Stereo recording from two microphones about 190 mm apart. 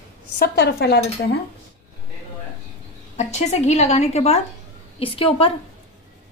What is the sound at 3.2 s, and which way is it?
A woman's voice, 35° left (ahead or behind).